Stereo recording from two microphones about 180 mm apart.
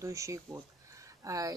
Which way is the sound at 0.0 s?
15° right (ahead or behind).